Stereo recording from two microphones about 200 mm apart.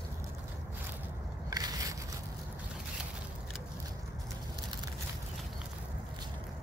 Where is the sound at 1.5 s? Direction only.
20° right (ahead or behind).